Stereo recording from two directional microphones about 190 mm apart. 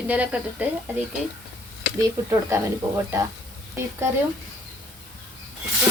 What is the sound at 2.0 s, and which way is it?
A woman's voice, 15° right (ahead or behind).